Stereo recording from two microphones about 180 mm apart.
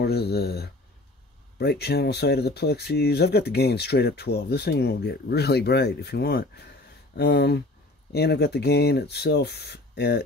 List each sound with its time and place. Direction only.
0.0 s speech: 65° left (ahead or behind)